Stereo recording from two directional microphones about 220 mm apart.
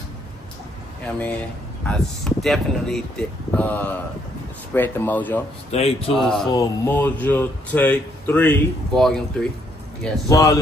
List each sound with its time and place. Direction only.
1.9 s speech: centre (ahead or behind)
5.7 s a man's voice: 30° left (ahead or behind)
6.1 s speech: centre (ahead or behind)
6.5 s speech: 15° left (ahead or behind)
10.0 s speech: 15° left (ahead or behind)